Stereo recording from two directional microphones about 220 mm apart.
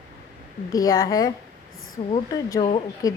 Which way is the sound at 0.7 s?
15° left (ahead or behind).